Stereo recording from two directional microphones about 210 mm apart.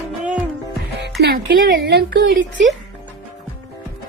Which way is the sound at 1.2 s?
45° right (ahead or behind).